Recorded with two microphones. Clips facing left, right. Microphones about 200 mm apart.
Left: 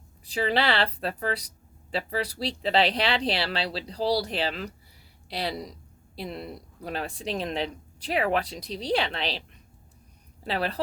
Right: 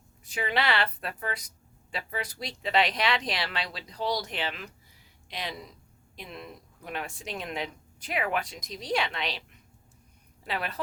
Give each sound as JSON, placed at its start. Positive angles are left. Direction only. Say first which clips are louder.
{"t": 0.3, "sound": "a woman's voice", "louder": "left 4 dB", "side_deg": 35}
{"t": 10.4, "sound": "a woman's voice", "louder": "left 5 dB", "side_deg": 30}